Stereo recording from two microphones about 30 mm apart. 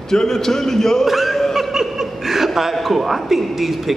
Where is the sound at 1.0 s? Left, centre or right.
Centre.